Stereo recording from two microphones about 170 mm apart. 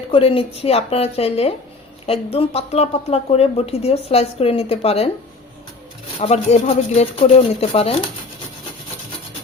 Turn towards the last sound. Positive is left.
turn(degrees=35)  # may be behind; listen again after turning